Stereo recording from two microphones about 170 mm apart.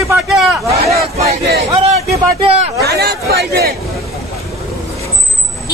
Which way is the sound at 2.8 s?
75° right (ahead or behind).